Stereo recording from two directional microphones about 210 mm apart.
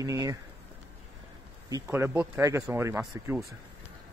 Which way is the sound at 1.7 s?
10° right (ahead or behind).